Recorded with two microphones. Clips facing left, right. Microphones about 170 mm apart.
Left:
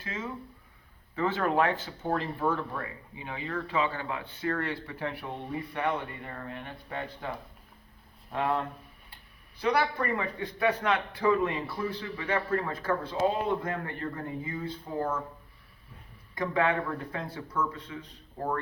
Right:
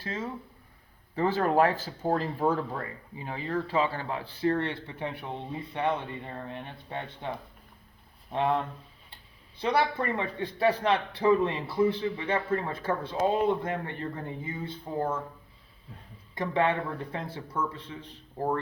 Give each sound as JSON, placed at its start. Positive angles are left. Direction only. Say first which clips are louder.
{"t": 0.0, "sound": "a sound", "louder": "right 3 dB", "side_deg": -35}
{"t": 1.1, "sound": "speech", "louder": "right 3 dB", "side_deg": -35}
{"t": 9.6, "sound": "speech", "louder": "right 1 dB", "side_deg": -25}
{"t": 16.3, "sound": "speech", "louder": "right 1 dB", "side_deg": -25}